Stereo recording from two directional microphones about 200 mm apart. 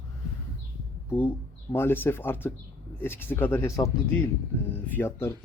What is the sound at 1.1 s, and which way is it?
Speech, 10° left (ahead or behind).